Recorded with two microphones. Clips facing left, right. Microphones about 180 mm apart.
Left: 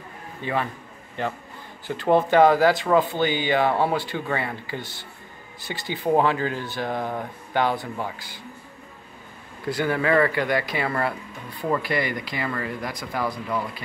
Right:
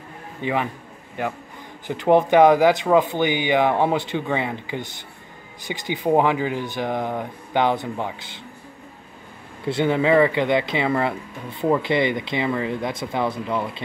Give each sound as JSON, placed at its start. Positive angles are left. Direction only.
{"t": 0.4, "sound": "a man's voice", "side_deg": -15}
{"t": 9.7, "sound": "speech", "side_deg": -25}